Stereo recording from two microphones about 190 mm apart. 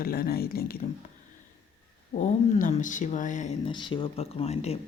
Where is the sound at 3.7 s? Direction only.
25° left (ahead or behind).